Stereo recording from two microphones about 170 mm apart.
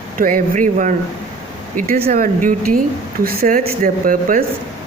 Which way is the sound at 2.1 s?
50° right (ahead or behind).